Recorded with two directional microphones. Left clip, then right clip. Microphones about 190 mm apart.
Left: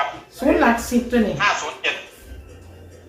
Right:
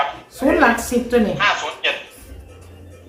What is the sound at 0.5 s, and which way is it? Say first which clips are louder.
Speech: right 3 dB; 30° right (ahead or behind).